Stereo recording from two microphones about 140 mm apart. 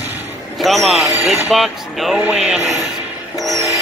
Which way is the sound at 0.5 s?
Centre (ahead or behind).